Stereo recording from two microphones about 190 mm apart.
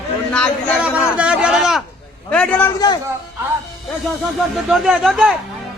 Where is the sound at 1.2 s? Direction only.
5° right (ahead or behind).